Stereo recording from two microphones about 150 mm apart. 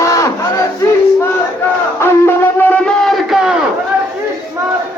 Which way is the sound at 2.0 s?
15° left (ahead or behind).